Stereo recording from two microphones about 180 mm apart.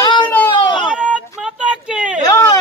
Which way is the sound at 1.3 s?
5° right (ahead or behind).